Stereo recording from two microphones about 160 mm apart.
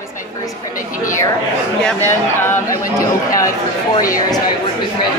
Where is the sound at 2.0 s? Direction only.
15° left (ahead or behind).